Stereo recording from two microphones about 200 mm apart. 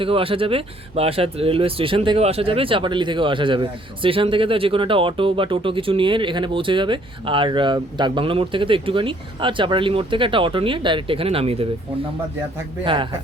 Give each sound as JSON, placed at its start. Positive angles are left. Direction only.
{"t": 0.0, "sound": "speech", "side_deg": -25}
{"t": 12.8, "sound": "speech", "side_deg": -25}